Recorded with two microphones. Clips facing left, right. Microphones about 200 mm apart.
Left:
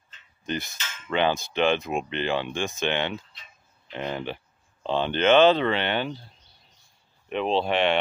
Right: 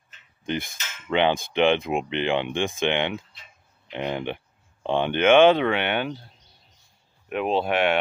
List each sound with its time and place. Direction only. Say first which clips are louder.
0.9 s a sound: right 2 dB; 15° right (ahead or behind)
1.5 s speech: right 3 dB; 15° right (ahead or behind)
7.2 s speech: right 1 dB; 10° right (ahead or behind)